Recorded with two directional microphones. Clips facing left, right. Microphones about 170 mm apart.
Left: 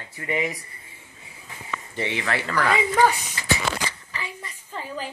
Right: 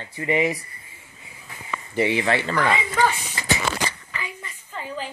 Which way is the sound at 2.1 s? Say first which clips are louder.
Right 4 dB; 25° right (ahead or behind).